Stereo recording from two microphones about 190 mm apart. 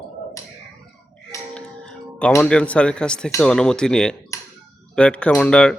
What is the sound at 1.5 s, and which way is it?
Speech, 5° left (ahead or behind).